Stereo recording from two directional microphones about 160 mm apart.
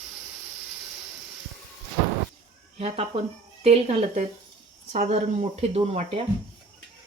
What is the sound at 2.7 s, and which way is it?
A woman's voice, 40° right (ahead or behind).